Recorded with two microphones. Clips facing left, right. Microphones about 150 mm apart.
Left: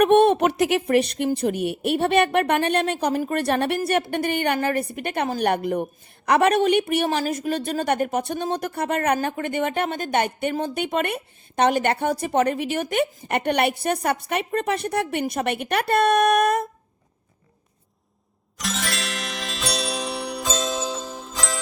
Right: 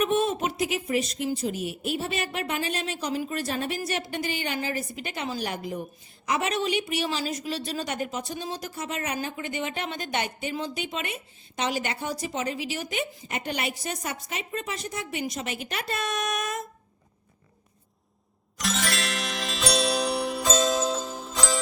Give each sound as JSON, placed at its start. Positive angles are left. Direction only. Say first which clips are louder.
{"t": 0.0, "sound": "a woman's voice", "louder": "left 9 dB", "side_deg": 65}
{"t": 18.5, "sound": "music", "louder": "even", "side_deg": 0}